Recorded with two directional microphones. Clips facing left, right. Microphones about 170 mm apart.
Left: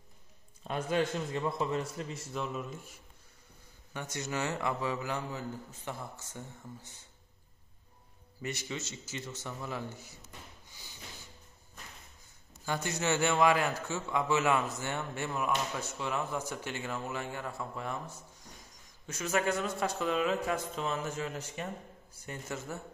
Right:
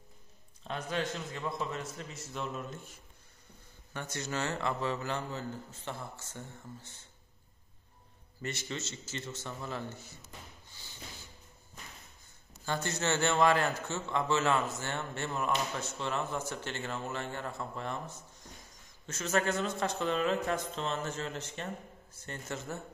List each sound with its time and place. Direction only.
0.7 s a man's voice: 10° left (ahead or behind)
1.3 s a man's voice: 30° left (ahead or behind)
2.3 s speech: 5° left (ahead or behind)
3.9 s a man's voice: 15° left (ahead or behind)
8.4 s a man's voice: 10° left (ahead or behind)
12.6 s a man's voice: 10° left (ahead or behind)